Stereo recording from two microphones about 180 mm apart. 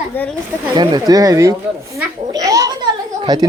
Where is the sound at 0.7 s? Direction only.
20° right (ahead or behind).